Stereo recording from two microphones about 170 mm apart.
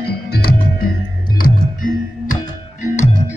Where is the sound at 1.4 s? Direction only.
50° left (ahead or behind).